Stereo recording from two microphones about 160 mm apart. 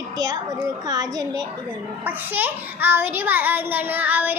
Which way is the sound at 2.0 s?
10° right (ahead or behind).